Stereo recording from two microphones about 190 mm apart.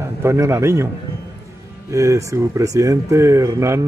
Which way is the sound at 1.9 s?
15° right (ahead or behind).